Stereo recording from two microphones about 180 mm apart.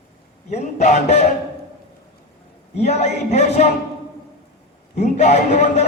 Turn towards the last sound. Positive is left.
turn(degrees=40)  # may be behind; listen again after turning